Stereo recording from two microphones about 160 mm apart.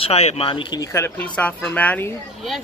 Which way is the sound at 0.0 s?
40° left (ahead or behind).